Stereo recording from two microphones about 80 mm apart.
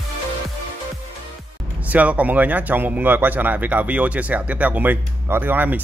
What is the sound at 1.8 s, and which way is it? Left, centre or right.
Speech, centre.